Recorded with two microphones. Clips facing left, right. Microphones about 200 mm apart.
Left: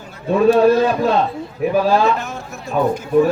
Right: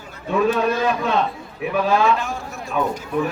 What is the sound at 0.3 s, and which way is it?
A man's voice, 35° left (ahead or behind).